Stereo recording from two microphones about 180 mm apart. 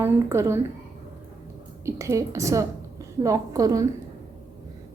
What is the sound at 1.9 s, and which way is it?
A woman's voice, 15° right (ahead or behind).